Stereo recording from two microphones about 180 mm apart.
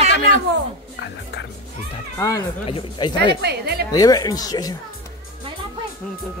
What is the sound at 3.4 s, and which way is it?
Speech, 65° right (ahead or behind).